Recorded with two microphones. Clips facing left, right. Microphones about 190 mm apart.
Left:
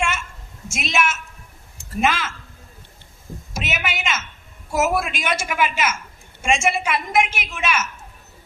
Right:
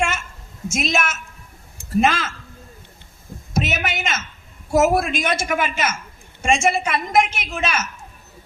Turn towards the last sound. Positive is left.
turn(degrees=-40)  # may be behind; listen again after turning